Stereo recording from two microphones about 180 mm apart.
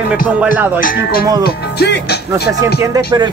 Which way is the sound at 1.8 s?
65° left (ahead or behind).